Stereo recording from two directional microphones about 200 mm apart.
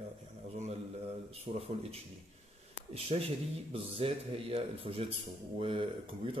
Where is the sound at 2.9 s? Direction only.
30° right (ahead or behind).